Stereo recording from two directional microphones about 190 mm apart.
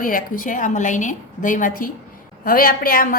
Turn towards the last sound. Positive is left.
turn(degrees=50)  # may be behind; listen again after turning